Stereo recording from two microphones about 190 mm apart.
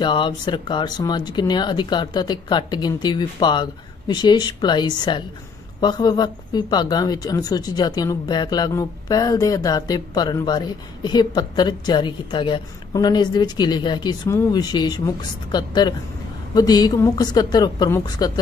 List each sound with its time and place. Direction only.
0.0 s speech: 25° left (ahead or behind)